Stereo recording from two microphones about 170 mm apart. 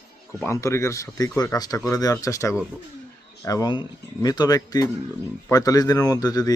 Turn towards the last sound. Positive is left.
turn(degrees=20)  # may be behind; listen again after turning